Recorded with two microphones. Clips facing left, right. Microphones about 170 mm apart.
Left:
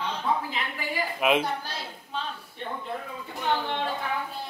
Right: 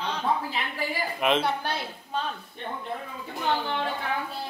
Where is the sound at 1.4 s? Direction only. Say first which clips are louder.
Right 4 dB; 60° right (ahead or behind).